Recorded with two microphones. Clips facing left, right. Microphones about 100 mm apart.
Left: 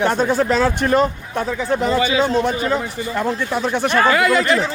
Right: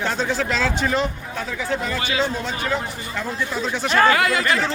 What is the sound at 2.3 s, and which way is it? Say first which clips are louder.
A man's voice: left 7 dB; 75° left (ahead or behind).